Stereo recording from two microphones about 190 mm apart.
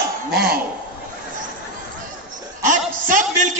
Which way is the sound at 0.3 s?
55° right (ahead or behind).